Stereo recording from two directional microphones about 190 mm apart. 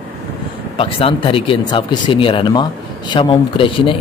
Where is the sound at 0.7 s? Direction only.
30° left (ahead or behind).